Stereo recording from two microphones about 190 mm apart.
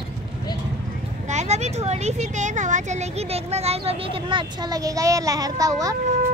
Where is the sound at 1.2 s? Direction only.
35° right (ahead or behind); by 6.0 s 20° right (ahead or behind).